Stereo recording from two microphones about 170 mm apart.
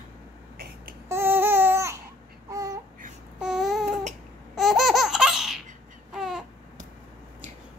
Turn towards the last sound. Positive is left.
turn(degrees=-5)  # may be behind; listen again after turning